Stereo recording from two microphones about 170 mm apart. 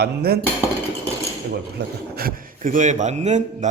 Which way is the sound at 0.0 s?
65° right (ahead or behind).